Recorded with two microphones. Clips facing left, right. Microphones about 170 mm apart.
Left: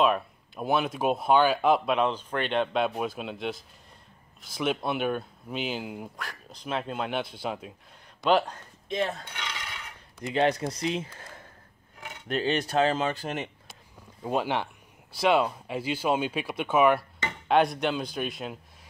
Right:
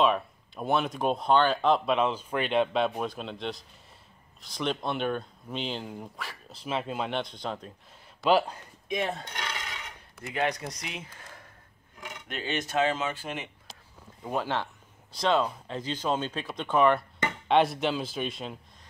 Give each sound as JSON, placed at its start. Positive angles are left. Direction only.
{"t": 0.0, "sound": "speech", "side_deg": 0}
{"t": 8.2, "sound": "speech", "side_deg": -5}
{"t": 10.2, "sound": "speech", "side_deg": 25}
{"t": 14.2, "sound": "speech", "side_deg": 15}